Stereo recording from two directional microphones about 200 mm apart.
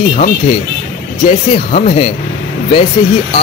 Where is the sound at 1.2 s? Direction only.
30° left (ahead or behind).